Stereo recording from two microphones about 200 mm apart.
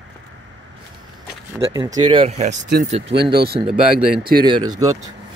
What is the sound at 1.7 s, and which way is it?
Speech, 20° right (ahead or behind).